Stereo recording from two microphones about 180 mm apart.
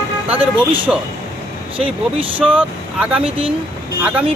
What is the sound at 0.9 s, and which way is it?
Speech, 5° right (ahead or behind).